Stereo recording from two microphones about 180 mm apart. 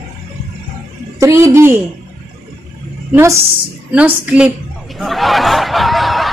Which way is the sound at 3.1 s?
15° right (ahead or behind).